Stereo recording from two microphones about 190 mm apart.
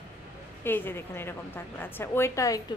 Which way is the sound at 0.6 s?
10° left (ahead or behind).